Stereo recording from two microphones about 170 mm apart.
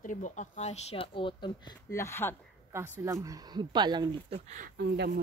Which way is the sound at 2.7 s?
15° right (ahead or behind).